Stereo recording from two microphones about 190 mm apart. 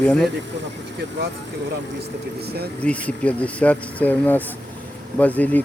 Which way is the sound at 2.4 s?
55° right (ahead or behind).